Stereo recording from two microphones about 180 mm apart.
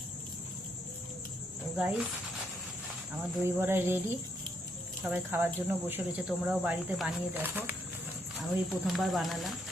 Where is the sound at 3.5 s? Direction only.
10° right (ahead or behind).